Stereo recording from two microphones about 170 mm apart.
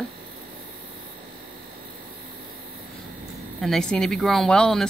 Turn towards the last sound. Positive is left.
turn(degrees=5)  # may be behind; listen again after turning